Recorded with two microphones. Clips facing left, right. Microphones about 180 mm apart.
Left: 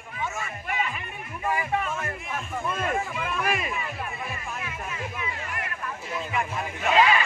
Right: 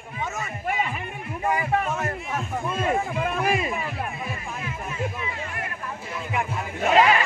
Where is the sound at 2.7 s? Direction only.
25° right (ahead or behind).